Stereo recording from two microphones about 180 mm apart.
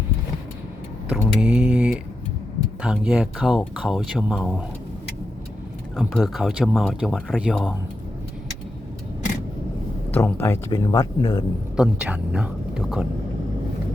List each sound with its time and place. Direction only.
1.1 s mantra: 5° right (ahead or behind)
2.8 s speech: 5° right (ahead or behind)
6.0 s speech: centre (ahead or behind)
10.1 s speech: 10° left (ahead or behind)
11.8 s speech: 10° right (ahead or behind)